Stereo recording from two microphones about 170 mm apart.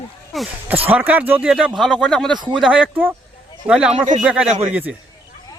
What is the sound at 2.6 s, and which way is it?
Speech, 5° right (ahead or behind).